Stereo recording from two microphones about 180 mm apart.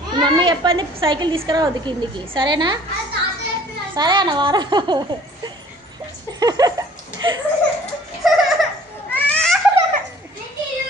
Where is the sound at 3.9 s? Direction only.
25° right (ahead or behind).